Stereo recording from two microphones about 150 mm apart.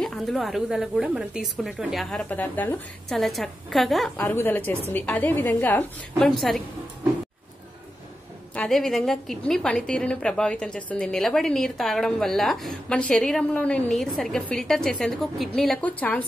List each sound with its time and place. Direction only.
0.0 s a woman's voice: centre (ahead or behind)
4.2 s a woman's voice: 15° left (ahead or behind)
8.5 s a woman's voice: 5° left (ahead or behind)